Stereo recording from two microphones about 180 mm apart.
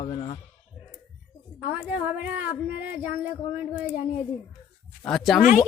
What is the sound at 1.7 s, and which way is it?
Female singing, 5° right (ahead or behind).